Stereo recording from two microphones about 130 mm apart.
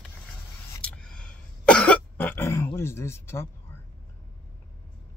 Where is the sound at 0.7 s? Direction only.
10° left (ahead or behind).